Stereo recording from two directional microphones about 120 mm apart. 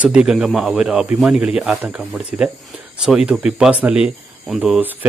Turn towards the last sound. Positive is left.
turn(degrees=-10)  # may be behind; listen again after turning